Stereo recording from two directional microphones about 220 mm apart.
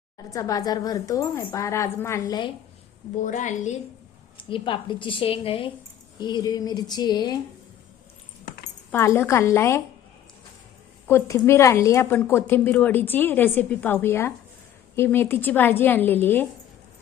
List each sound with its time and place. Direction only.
0.3 s a woman's voice: 15° left (ahead or behind)
3.2 s a woman's voice: 35° left (ahead or behind)
4.4 s a woman's voice: 20° left (ahead or behind)
8.9 s a woman's voice: 10° left (ahead or behind)
11.1 s a woman's voice: 10° left (ahead or behind)